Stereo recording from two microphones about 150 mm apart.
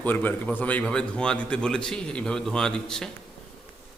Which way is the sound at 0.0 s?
10° left (ahead or behind).